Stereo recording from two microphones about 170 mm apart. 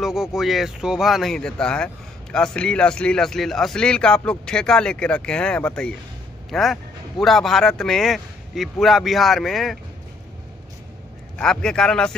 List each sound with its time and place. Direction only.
0.0 s a man's voice: 5° right (ahead or behind)
11.3 s a man's voice: 5° left (ahead or behind)